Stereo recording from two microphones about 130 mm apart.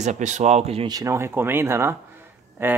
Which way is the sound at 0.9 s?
25° right (ahead or behind).